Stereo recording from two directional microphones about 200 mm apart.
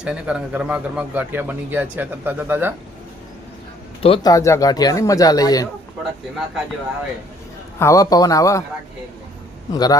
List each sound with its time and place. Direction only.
0.0 s a man's voice: 5° right (ahead or behind)
4.0 s speech: 25° left (ahead or behind)
7.8 s speech: 15° left (ahead or behind)
9.7 s a man's voice: 20° left (ahead or behind)